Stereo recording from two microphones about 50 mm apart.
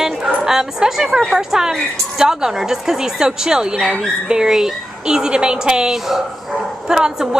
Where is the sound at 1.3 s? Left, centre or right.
Centre.